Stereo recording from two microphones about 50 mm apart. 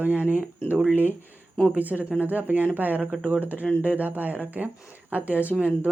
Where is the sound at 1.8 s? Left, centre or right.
Right.